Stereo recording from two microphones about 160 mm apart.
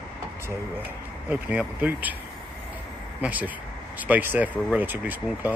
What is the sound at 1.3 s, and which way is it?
Speech, 10° right (ahead or behind).